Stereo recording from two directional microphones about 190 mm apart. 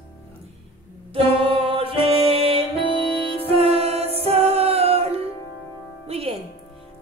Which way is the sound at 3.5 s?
30° right (ahead or behind).